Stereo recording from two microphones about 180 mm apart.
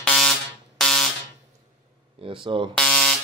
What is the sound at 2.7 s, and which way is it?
Buzzer, 5° left (ahead or behind).